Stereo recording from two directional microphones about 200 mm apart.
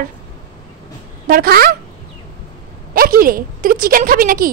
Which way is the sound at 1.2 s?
45° right (ahead or behind).